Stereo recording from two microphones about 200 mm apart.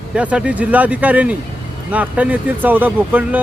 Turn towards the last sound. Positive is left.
turn(degrees=-10)  # may be behind; listen again after turning